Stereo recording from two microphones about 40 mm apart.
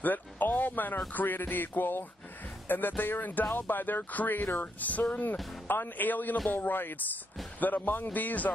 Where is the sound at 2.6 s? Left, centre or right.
Left.